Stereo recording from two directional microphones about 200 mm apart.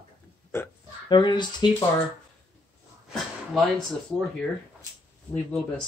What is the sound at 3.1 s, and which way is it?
Speech, centre (ahead or behind).